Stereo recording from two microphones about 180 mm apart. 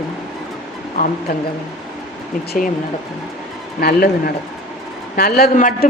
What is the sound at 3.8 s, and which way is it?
A woman's voice, 55° left (ahead or behind).